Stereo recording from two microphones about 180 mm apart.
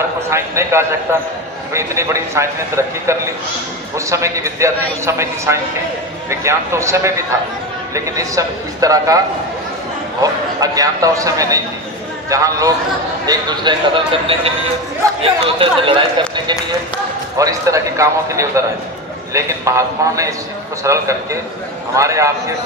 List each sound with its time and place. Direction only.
0.3 s a man's voice: 15° right (ahead or behind)
4.1 s a man's voice: 15° right (ahead or behind)
10.2 s a man's voice: 20° right (ahead or behind)
17.4 s a man's voice: 20° right (ahead or behind)